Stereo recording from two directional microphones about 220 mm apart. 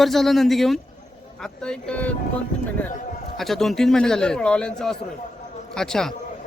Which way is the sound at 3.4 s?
Centre (ahead or behind).